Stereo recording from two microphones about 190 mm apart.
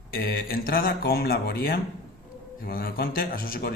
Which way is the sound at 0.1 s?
50° left (ahead or behind).